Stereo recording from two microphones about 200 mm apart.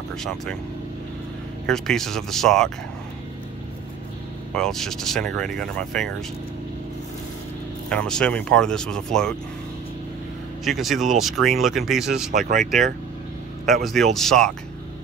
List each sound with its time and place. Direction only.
0.1 s speech: centre (ahead or behind)
1.7 s speech: centre (ahead or behind)
4.6 s speech: centre (ahead or behind)
7.9 s speech: 5° left (ahead or behind)
10.6 s speech: centre (ahead or behind)
12.3 s speech: 40° right (ahead or behind)
13.8 s speech: centre (ahead or behind)